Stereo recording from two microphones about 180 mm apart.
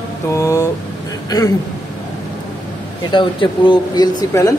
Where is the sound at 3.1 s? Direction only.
25° left (ahead or behind).